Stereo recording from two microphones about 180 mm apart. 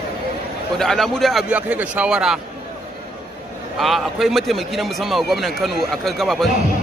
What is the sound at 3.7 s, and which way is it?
A man's voice, centre (ahead or behind).